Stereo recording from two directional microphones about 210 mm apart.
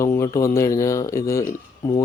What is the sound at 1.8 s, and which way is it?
Speech, 25° left (ahead or behind).